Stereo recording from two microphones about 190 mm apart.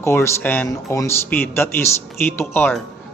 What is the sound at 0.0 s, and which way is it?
A man's voice, 15° left (ahead or behind).